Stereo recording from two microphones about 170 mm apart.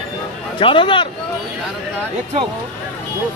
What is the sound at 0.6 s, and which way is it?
Speech, 30° left (ahead or behind).